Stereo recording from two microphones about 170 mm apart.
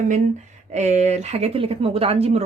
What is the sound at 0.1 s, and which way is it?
Speech, 45° right (ahead or behind).